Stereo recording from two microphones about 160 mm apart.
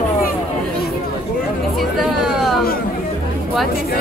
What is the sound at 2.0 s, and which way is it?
Music, centre (ahead or behind).